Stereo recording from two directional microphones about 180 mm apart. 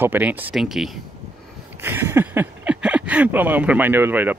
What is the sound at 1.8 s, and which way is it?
Speech, 15° right (ahead or behind).